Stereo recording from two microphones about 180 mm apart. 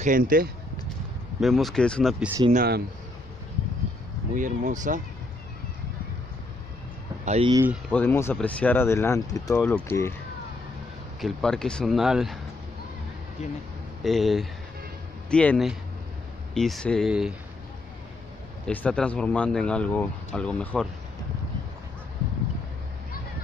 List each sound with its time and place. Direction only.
0.0 s speech: 50° right (ahead or behind)
1.4 s speech: centre (ahead or behind)
2.5 s speech: 55° right (ahead or behind)
4.4 s speech: 45° right (ahead or behind)
7.2 s speech: 35° right (ahead or behind)
7.9 s speech: 10° left (ahead or behind)
11.1 s speech: centre (ahead or behind)
14.0 s speech: centre (ahead or behind)
18.7 s speech: 5° left (ahead or behind)